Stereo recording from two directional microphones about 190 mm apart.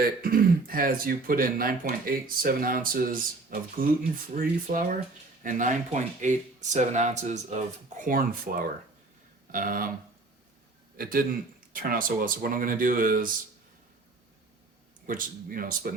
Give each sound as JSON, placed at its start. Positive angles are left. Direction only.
{"t": 0.2, "sound": "speech", "side_deg": -50}
{"t": 10.9, "sound": "a man's voice", "side_deg": -50}
{"t": 15.0, "sound": "speech", "side_deg": -45}